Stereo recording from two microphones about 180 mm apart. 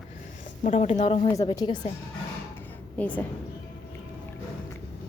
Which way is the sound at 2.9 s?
10° left (ahead or behind).